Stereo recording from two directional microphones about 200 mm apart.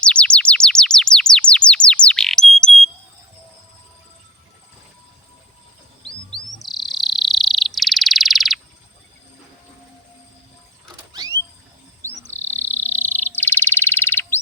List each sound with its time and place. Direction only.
0.0 s bird: 5° left (ahead or behind)
6.3 s bird: centre (ahead or behind)
11.1 s mechanisms: 20° right (ahead or behind)
12.5 s frog: 10° left (ahead or behind)